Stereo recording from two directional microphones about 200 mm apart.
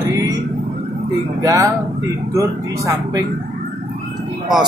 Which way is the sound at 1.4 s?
15° right (ahead or behind).